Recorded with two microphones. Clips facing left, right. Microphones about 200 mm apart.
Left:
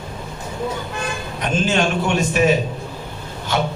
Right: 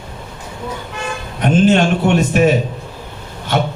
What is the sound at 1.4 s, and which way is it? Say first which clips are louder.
A man's voice: right 7 dB; 55° right (ahead or behind).